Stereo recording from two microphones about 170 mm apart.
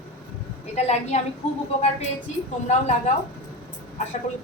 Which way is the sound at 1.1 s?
40° left (ahead or behind).